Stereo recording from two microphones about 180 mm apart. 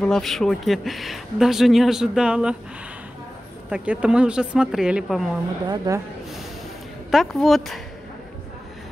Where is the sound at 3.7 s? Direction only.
5° right (ahead or behind).